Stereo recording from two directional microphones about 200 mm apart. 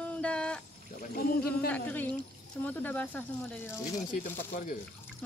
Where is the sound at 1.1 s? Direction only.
50° left (ahead or behind).